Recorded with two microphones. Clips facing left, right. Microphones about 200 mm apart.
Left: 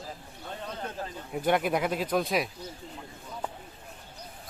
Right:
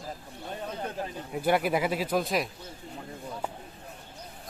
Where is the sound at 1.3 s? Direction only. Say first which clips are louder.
Even; 5° right (ahead or behind).